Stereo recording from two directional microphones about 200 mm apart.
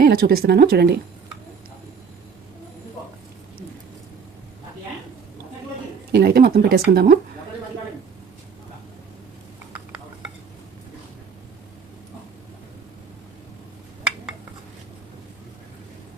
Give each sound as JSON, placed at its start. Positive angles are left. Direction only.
{"t": 0.0, "sound": "speech", "side_deg": -45}
{"t": 6.1, "sound": "speech", "side_deg": -50}